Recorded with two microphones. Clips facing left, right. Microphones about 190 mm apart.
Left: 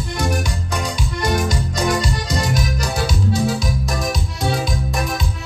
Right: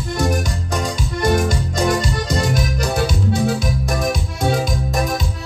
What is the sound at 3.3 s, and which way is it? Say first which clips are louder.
Music: right 2 dB; 55° right (ahead or behind).